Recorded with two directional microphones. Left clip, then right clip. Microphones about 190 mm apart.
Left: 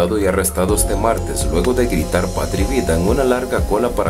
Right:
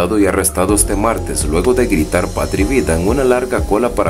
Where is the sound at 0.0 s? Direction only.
15° right (ahead or behind).